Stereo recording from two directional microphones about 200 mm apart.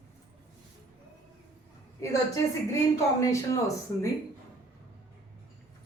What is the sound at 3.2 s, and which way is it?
Speech, 15° left (ahead or behind).